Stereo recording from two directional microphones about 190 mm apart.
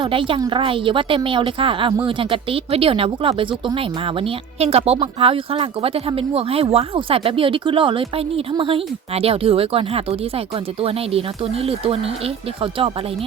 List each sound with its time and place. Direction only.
0.0 s speech: 25° right (ahead or behind)